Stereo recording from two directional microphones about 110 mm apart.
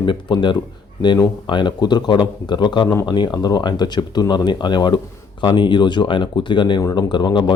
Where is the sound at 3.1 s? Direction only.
40° left (ahead or behind).